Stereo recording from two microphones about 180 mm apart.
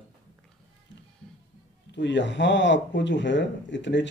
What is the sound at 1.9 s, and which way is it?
Speech, 80° left.